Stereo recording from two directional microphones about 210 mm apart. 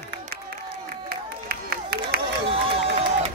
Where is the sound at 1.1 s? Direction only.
45° right (ahead or behind).